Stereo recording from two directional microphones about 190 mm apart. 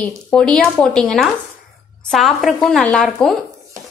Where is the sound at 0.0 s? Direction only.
5° left (ahead or behind).